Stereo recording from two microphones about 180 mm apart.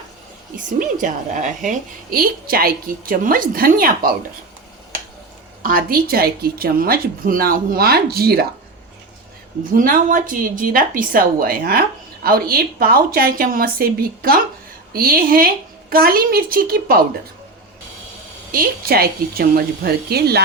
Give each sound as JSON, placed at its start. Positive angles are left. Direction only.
{"t": 0.5, "sound": "a woman's voice", "side_deg": -45}
{"t": 5.6, "sound": "speech", "side_deg": -55}
{"t": 9.7, "sound": "a woman's voice", "side_deg": -50}
{"t": 18.5, "sound": "speech", "side_deg": -55}